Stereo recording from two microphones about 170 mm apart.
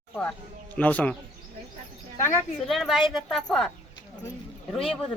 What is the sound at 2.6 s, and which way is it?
A woman's voice, centre (ahead or behind).